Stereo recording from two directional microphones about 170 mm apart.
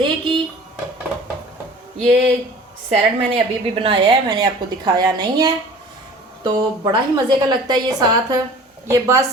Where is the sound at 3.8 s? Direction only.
30° right (ahead or behind).